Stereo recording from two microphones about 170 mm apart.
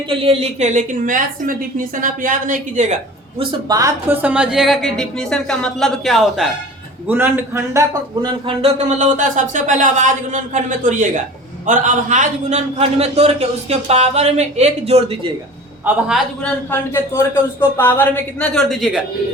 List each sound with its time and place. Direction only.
0.1 s speech: 35° right (ahead or behind)
3.7 s speech: 20° right (ahead or behind); by 6.5 s centre (ahead or behind)
7.1 s a man's voice: 15° right (ahead or behind); by 15.3 s 40° right (ahead or behind)
15.9 s speech: 5° right (ahead or behind)
16.4 s a man's voice: 15° left (ahead or behind); by 19.0 s centre (ahead or behind)